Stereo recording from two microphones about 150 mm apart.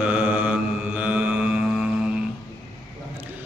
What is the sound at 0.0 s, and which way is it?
Mantra, 10° right (ahead or behind).